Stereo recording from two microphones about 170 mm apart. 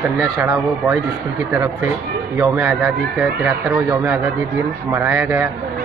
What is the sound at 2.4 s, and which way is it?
Speech, 10° right (ahead or behind).